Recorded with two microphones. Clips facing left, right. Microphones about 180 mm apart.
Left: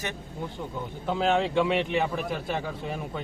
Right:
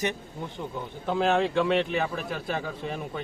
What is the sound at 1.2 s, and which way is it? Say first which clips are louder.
A man's voice: even; 10° left (ahead or behind).